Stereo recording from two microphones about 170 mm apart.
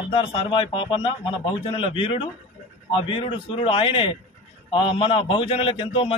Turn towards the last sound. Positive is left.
turn(degrees=30)  # may be behind; listen again after turning